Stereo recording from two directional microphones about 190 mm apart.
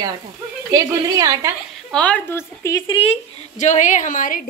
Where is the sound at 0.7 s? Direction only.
20° right (ahead or behind).